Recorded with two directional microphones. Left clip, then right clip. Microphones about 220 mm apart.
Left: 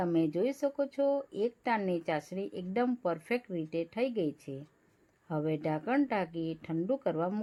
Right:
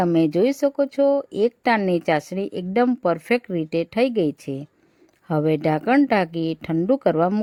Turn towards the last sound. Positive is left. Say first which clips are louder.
# right 13 dB
turn(degrees=-40)  # may be behind; listen again after turning